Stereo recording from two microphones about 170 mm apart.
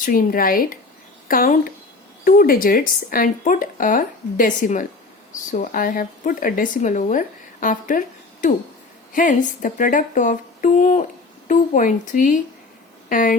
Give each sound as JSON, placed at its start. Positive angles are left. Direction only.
{"t": 0.0, "sound": "a woman's voice", "side_deg": 55}